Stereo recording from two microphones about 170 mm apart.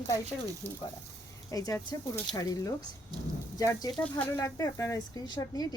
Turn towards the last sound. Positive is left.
turn(degrees=20)  # may be behind; listen again after turning